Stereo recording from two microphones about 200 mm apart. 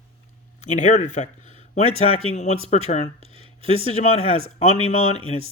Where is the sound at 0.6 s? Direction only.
35° left (ahead or behind).